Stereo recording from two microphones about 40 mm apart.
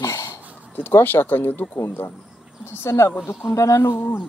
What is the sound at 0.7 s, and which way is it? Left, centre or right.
Speech, left.